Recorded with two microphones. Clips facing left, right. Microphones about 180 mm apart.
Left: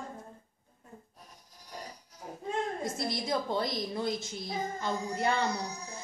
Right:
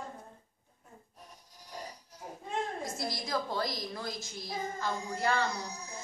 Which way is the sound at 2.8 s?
25° left (ahead or behind).